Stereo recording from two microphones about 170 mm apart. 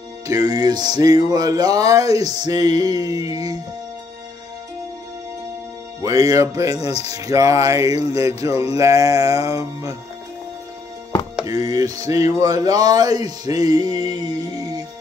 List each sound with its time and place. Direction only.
0.3 s music: 20° right (ahead or behind)
6.0 s music: 20° right (ahead or behind)
6.9 s speech: 35° left (ahead or behind)
7.2 s music: 20° right (ahead or behind)
11.4 s music: 20° right (ahead or behind)